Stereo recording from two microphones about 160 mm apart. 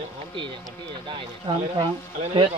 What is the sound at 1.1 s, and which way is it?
Speech, 30° right (ahead or behind).